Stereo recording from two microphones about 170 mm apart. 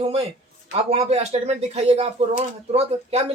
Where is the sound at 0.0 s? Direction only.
35° right (ahead or behind).